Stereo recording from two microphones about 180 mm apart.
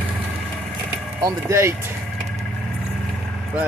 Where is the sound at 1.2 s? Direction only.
20° right (ahead or behind).